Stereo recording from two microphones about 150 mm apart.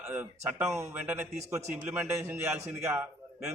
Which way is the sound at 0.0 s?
10° right (ahead or behind).